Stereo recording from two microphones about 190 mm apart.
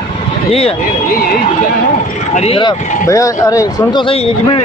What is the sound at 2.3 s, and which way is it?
A man's voice, 30° left (ahead or behind).